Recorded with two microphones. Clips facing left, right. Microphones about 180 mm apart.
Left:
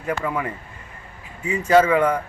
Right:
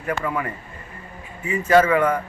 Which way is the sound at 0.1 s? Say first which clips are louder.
Even; 15° left (ahead or behind).